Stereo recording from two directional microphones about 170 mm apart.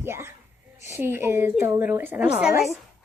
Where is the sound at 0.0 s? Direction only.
15° right (ahead or behind).